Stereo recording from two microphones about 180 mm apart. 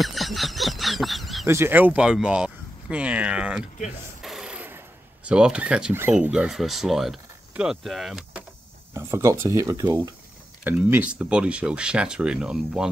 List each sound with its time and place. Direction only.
0.0 s a sound: centre (ahead or behind)
1.5 s speech: 10° right (ahead or behind)
8.9 s speech: 15° right (ahead or behind)